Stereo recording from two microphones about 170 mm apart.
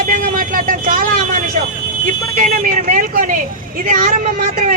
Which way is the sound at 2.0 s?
50° right (ahead or behind).